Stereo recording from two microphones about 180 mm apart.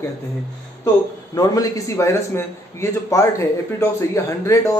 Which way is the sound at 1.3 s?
20° left (ahead or behind).